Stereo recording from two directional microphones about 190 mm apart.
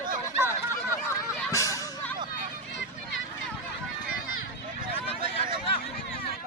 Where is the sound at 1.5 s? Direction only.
15° left (ahead or behind).